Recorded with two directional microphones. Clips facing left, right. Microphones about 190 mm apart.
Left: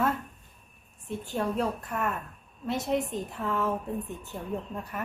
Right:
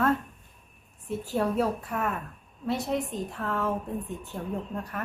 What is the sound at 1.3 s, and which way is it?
A woman's voice, 5° right (ahead or behind).